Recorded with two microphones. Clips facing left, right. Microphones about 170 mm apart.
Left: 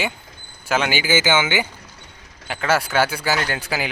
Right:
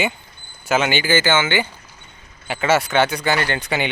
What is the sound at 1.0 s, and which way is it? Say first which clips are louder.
Speech: right 1 dB; 10° left (ahead or behind).